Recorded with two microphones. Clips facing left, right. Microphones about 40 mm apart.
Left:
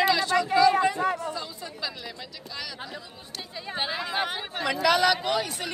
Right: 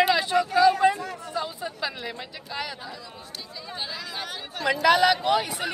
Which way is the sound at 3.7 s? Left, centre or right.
Left.